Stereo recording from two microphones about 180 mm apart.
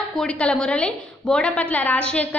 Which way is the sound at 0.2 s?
5° left (ahead or behind).